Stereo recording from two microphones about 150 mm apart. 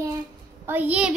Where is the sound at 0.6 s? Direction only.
10° right (ahead or behind).